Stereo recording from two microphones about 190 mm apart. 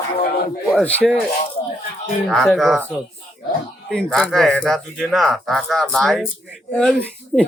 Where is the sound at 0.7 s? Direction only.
10° left (ahead or behind).